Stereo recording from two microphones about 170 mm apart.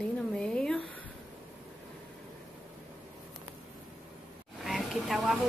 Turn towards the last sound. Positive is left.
turn(degrees=0)  # may be behind; listen again after turning